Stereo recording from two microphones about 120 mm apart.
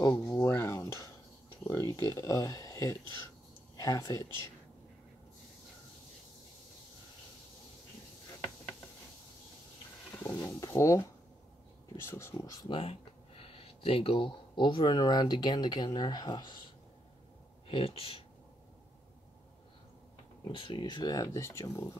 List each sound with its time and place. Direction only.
0.0 s a sound: 25° left (ahead or behind)
3.7 s speech: 30° left (ahead or behind)
10.1 s speech: 20° left (ahead or behind)
12.6 s speech: 50° left (ahead or behind)
17.6 s speech: 50° left (ahead or behind)
20.4 s speech: 40° left (ahead or behind); by 21.9 s 25° left (ahead or behind)